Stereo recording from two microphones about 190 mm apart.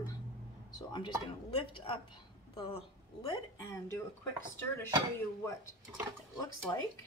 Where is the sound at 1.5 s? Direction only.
30° left (ahead or behind).